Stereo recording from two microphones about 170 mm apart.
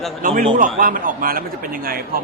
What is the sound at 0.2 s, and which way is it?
A man's voice, 55° right (ahead or behind).